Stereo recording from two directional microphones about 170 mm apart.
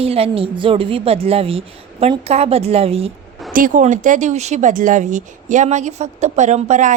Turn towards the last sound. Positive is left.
turn(degrees=-45)  # may be behind; listen again after turning